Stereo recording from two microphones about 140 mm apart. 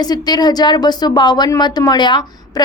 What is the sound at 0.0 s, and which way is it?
A woman's voice, 30° left (ahead or behind).